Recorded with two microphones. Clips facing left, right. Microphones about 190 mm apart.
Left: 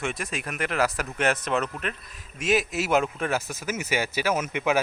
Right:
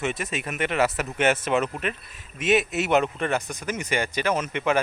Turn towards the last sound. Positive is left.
turn(degrees=10)  # may be behind; listen again after turning